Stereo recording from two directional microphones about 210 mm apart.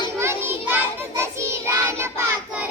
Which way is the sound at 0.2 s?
10° right (ahead or behind).